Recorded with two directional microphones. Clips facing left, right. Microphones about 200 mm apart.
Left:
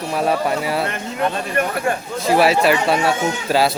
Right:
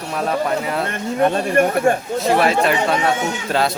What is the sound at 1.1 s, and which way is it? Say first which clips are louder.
Speech: right 6 dB; 45° right (ahead or behind).